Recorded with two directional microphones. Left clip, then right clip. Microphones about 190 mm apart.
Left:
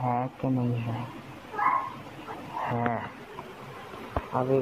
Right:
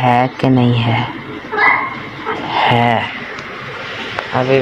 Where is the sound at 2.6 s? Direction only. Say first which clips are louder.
Right 17 dB; 30° right (ahead or behind).